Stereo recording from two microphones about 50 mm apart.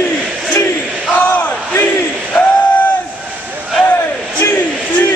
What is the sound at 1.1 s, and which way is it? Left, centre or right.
Crowd, left.